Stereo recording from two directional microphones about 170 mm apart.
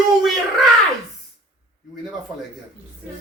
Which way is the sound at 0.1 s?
Centre (ahead or behind).